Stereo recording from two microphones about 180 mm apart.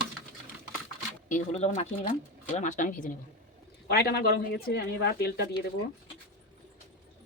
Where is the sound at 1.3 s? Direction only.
40° left (ahead or behind).